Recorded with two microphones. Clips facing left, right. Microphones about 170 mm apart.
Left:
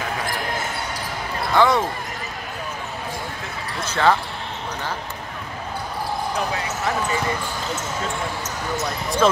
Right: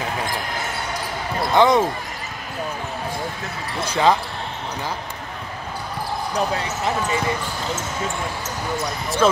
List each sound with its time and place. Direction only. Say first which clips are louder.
1.5 s speech: right 2 dB; 20° right (ahead or behind)
3.8 s speech: right 1 dB; 15° right (ahead or behind)
9.2 s speech: right 1 dB; centre (ahead or behind)